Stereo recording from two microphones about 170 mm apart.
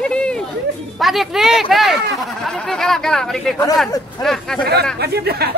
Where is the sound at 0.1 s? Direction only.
5° left (ahead or behind).